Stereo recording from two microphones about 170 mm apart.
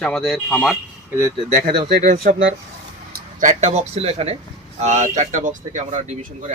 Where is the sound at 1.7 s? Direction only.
30° right (ahead or behind).